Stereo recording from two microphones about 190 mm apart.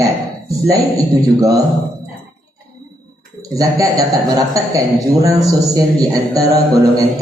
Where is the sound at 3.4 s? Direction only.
20° right (ahead or behind).